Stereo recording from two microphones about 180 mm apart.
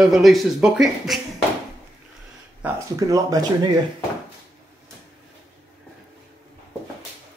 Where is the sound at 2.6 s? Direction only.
20° right (ahead or behind).